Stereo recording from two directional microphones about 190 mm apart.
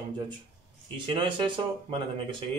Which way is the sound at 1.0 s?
25° right (ahead or behind).